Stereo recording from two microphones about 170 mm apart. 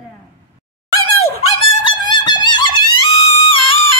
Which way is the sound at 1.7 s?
30° left (ahead or behind).